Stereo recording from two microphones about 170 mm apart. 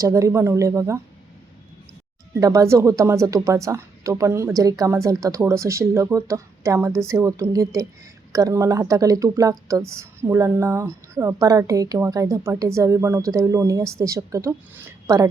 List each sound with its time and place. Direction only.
0.0 s a woman's voice: 20° right (ahead or behind)
2.3 s a woman's voice: 20° right (ahead or behind)